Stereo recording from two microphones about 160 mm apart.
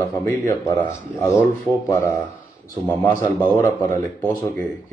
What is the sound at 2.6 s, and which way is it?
Speech, 20° left (ahead or behind).